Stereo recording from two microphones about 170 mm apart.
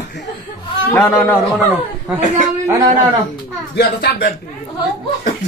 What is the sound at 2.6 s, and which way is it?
Speech, 20° right (ahead or behind).